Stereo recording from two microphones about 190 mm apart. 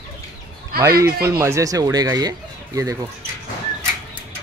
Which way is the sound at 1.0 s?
15° right (ahead or behind).